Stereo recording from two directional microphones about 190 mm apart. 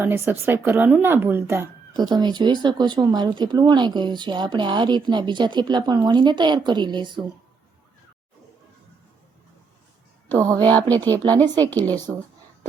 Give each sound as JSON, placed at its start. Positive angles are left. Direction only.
{"t": 0.0, "sound": "a woman's voice", "side_deg": -10}
{"t": 10.3, "sound": "a woman's voice", "side_deg": -15}
{"t": 10.7, "sound": "speech", "side_deg": 10}